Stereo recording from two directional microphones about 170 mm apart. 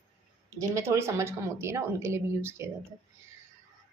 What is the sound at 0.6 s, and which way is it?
A woman's voice, 15° right (ahead or behind).